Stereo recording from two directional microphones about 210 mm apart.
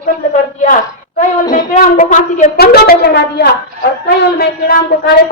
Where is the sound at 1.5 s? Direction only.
40° left (ahead or behind).